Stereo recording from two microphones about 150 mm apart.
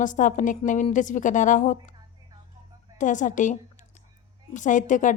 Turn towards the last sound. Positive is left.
turn(degrees=60)  # may be behind; listen again after turning